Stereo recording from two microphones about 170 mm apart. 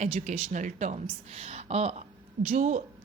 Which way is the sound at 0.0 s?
45° right (ahead or behind).